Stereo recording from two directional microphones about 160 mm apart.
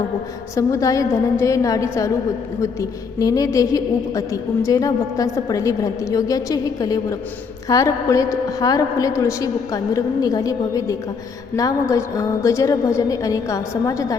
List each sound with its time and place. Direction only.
0.5 s a woman's voice: 20° left (ahead or behind)
3.2 s a woman's voice: 20° left (ahead or behind)